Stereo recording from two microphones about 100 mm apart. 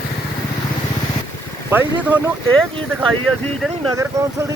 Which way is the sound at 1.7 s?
20° right (ahead or behind).